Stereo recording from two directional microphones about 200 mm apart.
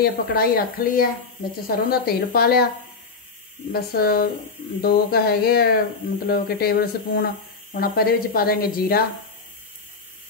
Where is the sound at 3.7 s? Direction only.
50° left (ahead or behind).